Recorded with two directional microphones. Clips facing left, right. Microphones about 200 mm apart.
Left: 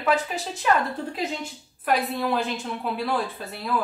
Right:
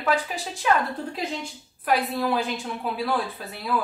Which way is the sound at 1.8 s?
Centre (ahead or behind).